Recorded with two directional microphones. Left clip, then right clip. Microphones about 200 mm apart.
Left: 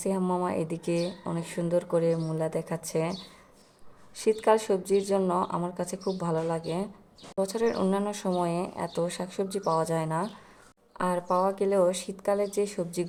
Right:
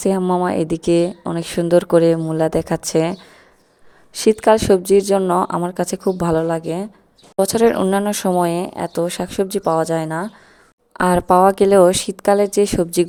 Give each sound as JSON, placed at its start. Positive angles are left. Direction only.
{"t": 0.0, "sound": "speech", "side_deg": -40}
{"t": 10.9, "sound": "speech", "side_deg": -50}